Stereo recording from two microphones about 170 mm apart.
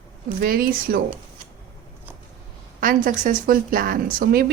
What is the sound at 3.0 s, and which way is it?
A woman's voice, 50° right (ahead or behind).